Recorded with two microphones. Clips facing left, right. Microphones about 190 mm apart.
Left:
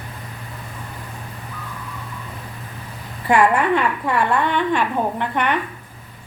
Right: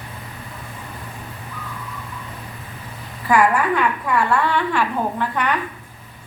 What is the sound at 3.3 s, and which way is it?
A woman's voice, 25° left (ahead or behind).